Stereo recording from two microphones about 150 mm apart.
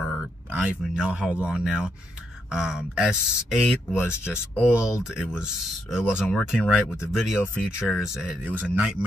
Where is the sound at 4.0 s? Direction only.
15° left (ahead or behind).